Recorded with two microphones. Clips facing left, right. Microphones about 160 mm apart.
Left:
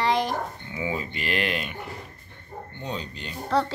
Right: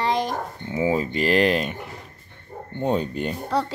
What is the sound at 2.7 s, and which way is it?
Speech, 50° right (ahead or behind).